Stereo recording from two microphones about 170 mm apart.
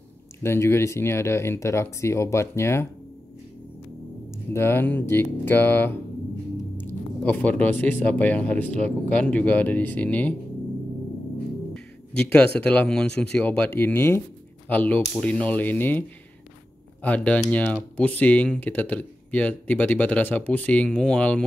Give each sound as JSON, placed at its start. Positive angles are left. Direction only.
{"t": 0.4, "sound": "speech", "side_deg": 15}
{"t": 4.5, "sound": "speech", "side_deg": 15}
{"t": 7.2, "sound": "speech", "side_deg": 10}
{"t": 11.7, "sound": "music", "side_deg": 5}
{"t": 12.5, "sound": "speech", "side_deg": 5}
{"t": 17.0, "sound": "speech", "side_deg": 10}